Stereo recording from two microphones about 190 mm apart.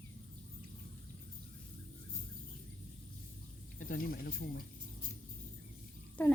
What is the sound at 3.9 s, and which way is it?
Speech, 50° left (ahead or behind).